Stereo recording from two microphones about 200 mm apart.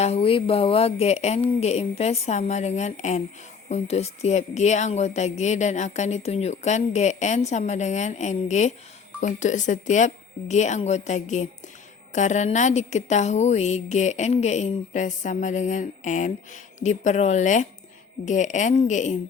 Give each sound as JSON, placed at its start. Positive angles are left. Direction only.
{"t": 0.0, "sound": "a woman's voice", "side_deg": 30}